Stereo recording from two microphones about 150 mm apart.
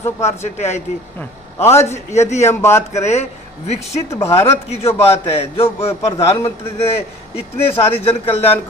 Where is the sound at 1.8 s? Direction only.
50° left (ahead or behind).